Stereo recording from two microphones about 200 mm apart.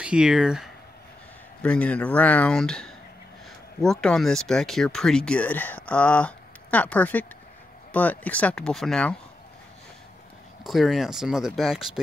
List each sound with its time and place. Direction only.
0.0 s speech: 5° right (ahead or behind)
1.6 s speech: 5° left (ahead or behind)
10.6 s speech: centre (ahead or behind)